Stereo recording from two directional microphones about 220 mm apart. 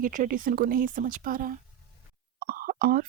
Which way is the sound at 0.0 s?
40° right (ahead or behind).